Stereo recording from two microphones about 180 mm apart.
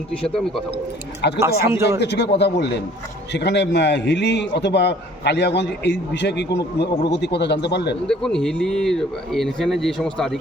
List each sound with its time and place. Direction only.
0.2 s speech: 5° left (ahead or behind)
1.4 s speech: 15° right (ahead or behind)
2.0 s a man's voice: 70° left (ahead or behind)
8.0 s speech: 5° left (ahead or behind)